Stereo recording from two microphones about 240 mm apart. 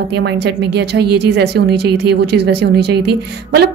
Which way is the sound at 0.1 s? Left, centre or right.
Right.